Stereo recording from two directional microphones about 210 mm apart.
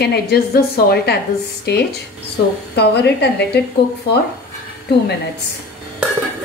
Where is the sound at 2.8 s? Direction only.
50° left (ahead or behind).